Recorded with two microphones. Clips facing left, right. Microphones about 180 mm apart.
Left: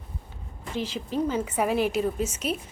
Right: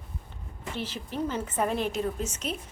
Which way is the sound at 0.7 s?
10° left (ahead or behind).